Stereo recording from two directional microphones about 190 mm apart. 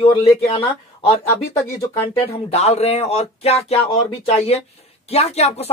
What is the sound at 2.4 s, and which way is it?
Speech, 35° left (ahead or behind).